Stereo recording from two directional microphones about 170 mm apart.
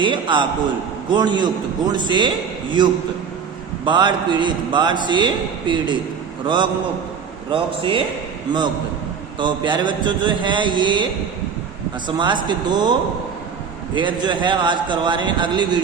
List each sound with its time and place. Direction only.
0.0 s a man's voice: 30° right (ahead or behind)
9.4 s a man's voice: 25° right (ahead or behind)
12.0 s a man's voice: 25° right (ahead or behind)